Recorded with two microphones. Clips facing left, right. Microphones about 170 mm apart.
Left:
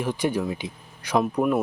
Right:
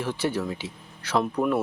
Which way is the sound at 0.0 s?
15° left (ahead or behind).